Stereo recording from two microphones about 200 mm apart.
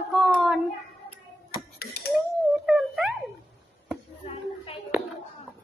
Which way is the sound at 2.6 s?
Centre (ahead or behind).